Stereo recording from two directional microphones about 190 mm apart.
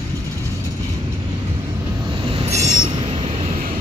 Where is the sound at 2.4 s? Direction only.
30° right (ahead or behind).